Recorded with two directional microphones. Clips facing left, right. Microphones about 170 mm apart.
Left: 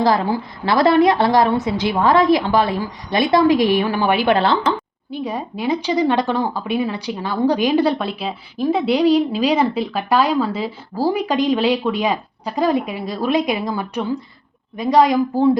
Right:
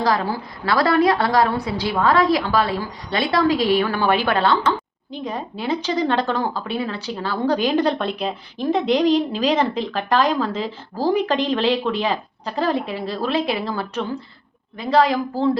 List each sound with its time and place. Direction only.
0.0 s a woman's voice: 25° left (ahead or behind)
4.4 s a woman's voice: 30° left (ahead or behind)
5.1 s a woman's voice: 10° left (ahead or behind)